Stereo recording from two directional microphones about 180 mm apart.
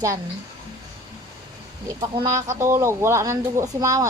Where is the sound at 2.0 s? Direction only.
15° right (ahead or behind).